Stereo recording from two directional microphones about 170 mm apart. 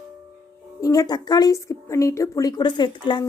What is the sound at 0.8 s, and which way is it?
A woman's voice, 20° left (ahead or behind).